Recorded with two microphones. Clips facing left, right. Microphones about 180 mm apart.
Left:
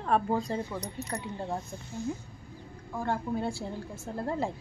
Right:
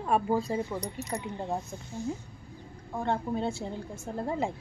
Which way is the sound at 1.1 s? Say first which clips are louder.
Right 1 dB; 20° right (ahead or behind).